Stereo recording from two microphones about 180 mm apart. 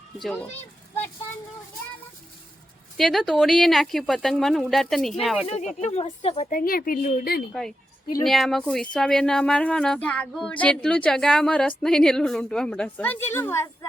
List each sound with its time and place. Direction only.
3.0 s speech: centre (ahead or behind)
5.8 s a woman's voice: 35° left (ahead or behind)
6.5 s speech: 55° left (ahead or behind)
8.2 s speech: centre (ahead or behind)